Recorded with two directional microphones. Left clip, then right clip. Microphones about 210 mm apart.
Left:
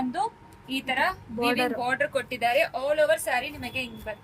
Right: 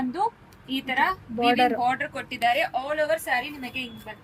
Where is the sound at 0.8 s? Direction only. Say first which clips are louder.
Right 2 dB; 35° left (ahead or behind).